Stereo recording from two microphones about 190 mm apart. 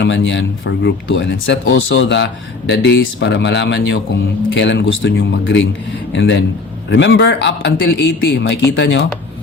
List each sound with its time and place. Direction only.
0.0 s speech: 70° left (ahead or behind)